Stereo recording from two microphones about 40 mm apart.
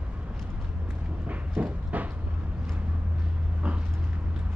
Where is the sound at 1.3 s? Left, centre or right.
Right.